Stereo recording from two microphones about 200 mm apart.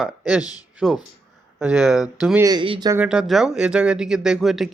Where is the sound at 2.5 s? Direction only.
25° right (ahead or behind).